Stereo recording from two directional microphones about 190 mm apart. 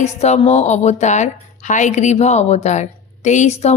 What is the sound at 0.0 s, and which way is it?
Speech, 35° left (ahead or behind).